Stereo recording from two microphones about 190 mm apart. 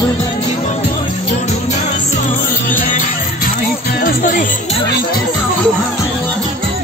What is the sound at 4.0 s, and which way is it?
Music, 45° left (ahead or behind).